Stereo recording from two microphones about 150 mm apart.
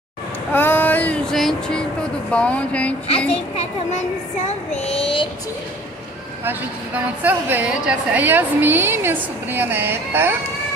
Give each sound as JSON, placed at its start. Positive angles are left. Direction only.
{"t": 0.5, "sound": "child singing", "side_deg": 15}
{"t": 2.3, "sound": "speech", "side_deg": 10}
{"t": 4.5, "sound": "child singing", "side_deg": 45}
{"t": 7.2, "sound": "a woman's voice", "side_deg": -10}